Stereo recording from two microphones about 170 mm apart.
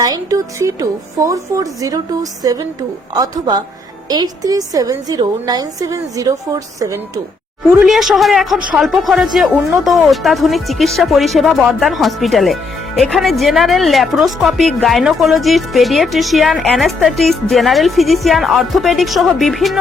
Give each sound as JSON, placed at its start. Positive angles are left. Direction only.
{"t": 0.0, "sound": "a woman's voice", "side_deg": -20}
{"t": 7.7, "sound": "speech", "side_deg": 0}